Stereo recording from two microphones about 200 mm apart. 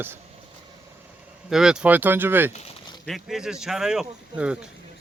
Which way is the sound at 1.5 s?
5° right (ahead or behind).